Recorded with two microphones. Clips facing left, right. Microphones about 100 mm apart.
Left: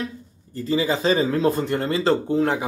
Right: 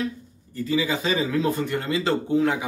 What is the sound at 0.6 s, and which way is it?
Speech, 35° left (ahead or behind).